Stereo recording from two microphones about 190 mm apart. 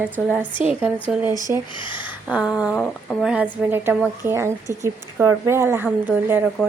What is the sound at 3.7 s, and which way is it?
A woman's voice, 10° right (ahead or behind).